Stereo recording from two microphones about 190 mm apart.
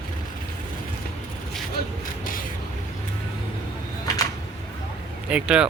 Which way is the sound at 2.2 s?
45° left (ahead or behind).